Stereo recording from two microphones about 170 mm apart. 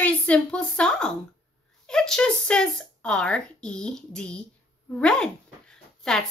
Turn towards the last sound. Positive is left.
turn(degrees=5)  # may be behind; listen again after turning